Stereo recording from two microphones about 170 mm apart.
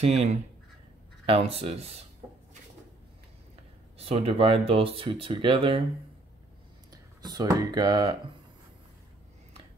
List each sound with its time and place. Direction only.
0.0 s speech: 40° right (ahead or behind)
4.0 s speech: 35° right (ahead or behind)
6.9 s speech: 25° right (ahead or behind)